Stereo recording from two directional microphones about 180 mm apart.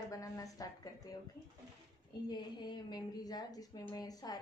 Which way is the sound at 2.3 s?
25° left (ahead or behind).